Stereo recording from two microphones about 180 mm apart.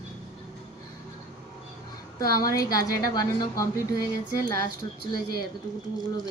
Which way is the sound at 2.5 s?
20° left (ahead or behind).